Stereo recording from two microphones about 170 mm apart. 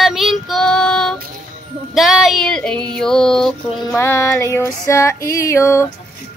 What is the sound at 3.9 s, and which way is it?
Female singing, 15° left (ahead or behind).